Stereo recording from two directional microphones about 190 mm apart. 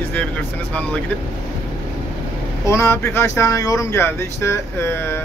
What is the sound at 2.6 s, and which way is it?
Speech, 15° left (ahead or behind).